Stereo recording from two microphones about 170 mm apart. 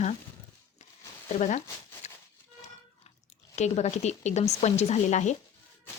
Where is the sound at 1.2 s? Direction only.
45° left (ahead or behind).